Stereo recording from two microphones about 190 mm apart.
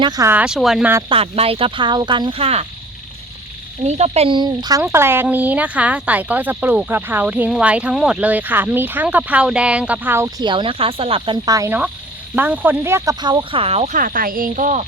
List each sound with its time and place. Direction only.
0.0 s speech: 20° right (ahead or behind)
1.1 s frog: 30° right (ahead or behind)
3.8 s frog: 35° right (ahead or behind)
4.8 s speech: 10° right (ahead or behind); by 14.8 s 40° right (ahead or behind)